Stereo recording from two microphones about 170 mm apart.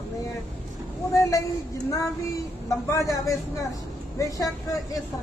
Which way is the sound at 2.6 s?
20° left (ahead or behind).